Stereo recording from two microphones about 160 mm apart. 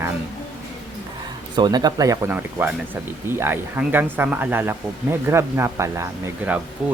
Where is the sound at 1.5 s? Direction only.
25° right (ahead or behind).